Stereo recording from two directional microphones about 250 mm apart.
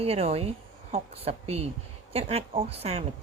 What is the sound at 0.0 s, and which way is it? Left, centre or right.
A woman's voice, right.